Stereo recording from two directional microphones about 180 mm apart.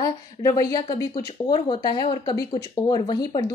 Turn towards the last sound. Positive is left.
turn(degrees=20)  # may be behind; listen again after turning